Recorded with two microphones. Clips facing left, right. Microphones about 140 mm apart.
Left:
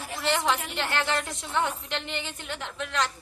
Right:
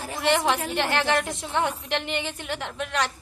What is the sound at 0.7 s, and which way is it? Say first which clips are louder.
Speech: right 5 dB; 60° right (ahead or behind).